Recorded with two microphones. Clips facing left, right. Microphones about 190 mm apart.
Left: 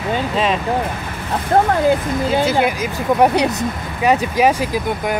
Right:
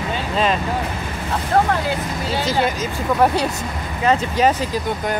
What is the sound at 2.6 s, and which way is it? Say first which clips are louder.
Speech: left 2 dB; 15° left (ahead or behind).